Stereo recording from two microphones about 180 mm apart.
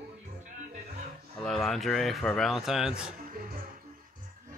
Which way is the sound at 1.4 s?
Centre (ahead or behind).